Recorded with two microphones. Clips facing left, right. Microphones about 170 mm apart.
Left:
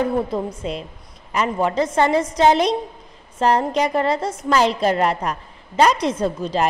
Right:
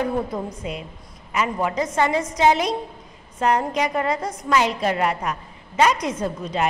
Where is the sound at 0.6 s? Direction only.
30° left (ahead or behind).